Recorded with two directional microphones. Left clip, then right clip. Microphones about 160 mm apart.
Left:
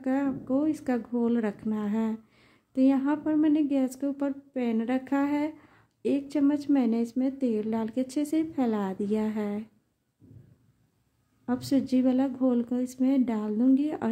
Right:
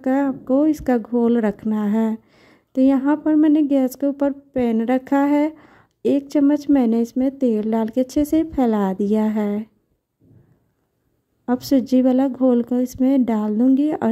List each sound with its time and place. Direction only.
0.0 s speech: 50° right (ahead or behind)
11.4 s speech: 50° right (ahead or behind)